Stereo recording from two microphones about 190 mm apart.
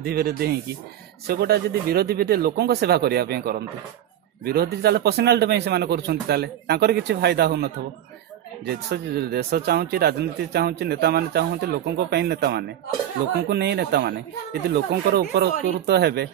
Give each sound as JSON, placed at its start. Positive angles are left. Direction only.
{"t": 0.0, "sound": "a man's voice", "side_deg": -55}